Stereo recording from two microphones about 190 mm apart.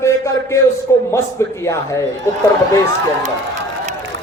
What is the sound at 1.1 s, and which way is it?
Speech, 15° left (ahead or behind).